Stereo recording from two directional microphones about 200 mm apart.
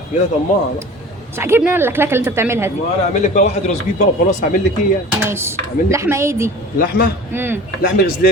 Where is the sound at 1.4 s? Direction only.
10° right (ahead or behind).